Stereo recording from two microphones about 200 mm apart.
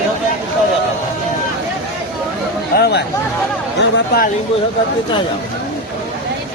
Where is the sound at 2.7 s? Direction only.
55° left (ahead or behind).